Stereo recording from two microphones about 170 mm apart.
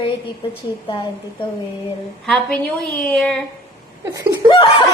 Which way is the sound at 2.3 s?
5° left (ahead or behind).